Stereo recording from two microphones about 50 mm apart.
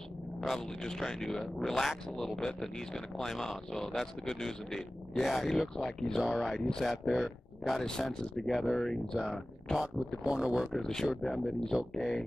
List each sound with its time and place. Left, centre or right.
0.4 s speech: centre
9.8 s speech: centre
10.6 s speech: centre